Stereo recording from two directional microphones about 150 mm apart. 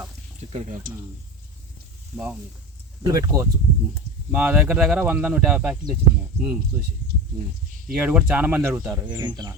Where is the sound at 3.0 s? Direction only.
25° right (ahead or behind).